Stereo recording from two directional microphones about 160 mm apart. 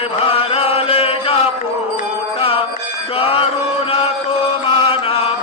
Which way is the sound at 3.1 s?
35° left (ahead or behind).